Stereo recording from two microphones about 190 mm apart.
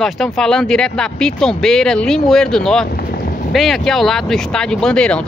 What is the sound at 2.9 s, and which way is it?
Boat, 50° left (ahead or behind).